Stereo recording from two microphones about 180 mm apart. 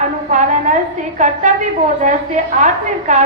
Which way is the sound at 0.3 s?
45° right (ahead or behind).